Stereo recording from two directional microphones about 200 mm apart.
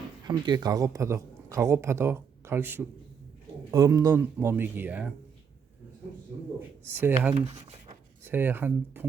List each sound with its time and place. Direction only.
0.3 s speech: 20° right (ahead or behind)
6.8 s speech: 10° right (ahead or behind)
7.3 s speech: 30° right (ahead or behind)
8.2 s speech: 10° right (ahead or behind)